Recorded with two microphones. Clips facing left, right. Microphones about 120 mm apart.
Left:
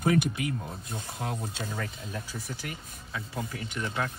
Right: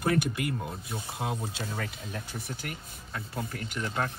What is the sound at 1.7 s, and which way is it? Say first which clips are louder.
Speech: even; 60° right (ahead or behind).